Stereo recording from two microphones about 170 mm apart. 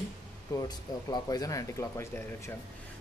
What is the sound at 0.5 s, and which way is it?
Speech, 25° left (ahead or behind).